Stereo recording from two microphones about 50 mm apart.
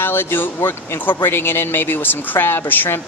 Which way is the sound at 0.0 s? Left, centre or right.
Left.